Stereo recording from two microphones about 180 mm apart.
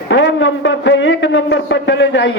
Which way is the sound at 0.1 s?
80° left.